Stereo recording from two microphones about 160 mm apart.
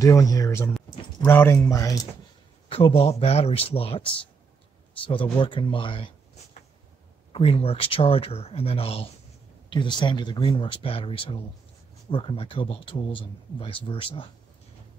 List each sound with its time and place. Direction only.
0.0 s speech: 20° left (ahead or behind)
2.7 s speech: 35° left (ahead or behind)
7.3 s speech: 35° left (ahead or behind)